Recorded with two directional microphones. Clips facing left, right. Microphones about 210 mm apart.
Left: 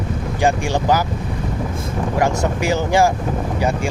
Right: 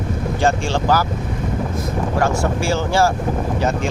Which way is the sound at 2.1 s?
15° left (ahead or behind).